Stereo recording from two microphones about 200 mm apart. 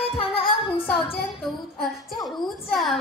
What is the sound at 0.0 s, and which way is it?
Music, 25° left (ahead or behind).